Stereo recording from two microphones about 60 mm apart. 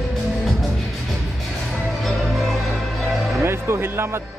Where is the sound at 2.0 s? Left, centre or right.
Centre.